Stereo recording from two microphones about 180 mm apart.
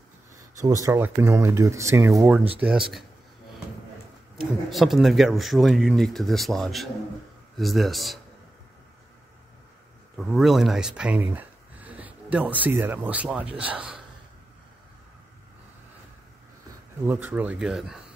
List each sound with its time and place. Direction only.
0.6 s speech: 15° right (ahead or behind)
4.6 s speech: centre (ahead or behind)
10.1 s speech: centre (ahead or behind)
17.0 s speech: 10° right (ahead or behind)